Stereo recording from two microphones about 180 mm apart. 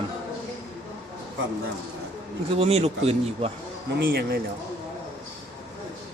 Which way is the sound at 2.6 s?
35° right (ahead or behind).